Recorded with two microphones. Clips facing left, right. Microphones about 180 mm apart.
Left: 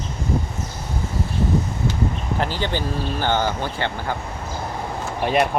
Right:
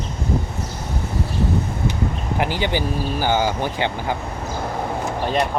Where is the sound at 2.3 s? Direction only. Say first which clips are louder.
Right 4 dB; 15° right (ahead or behind).